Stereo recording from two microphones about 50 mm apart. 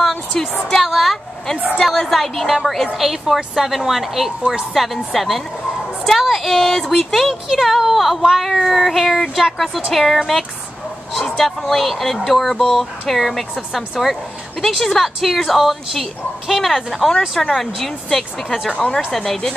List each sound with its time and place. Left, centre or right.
0.7 s a woman's voice: centre
18.7 s a woman's voice: left
19.1 s a woman's voice: centre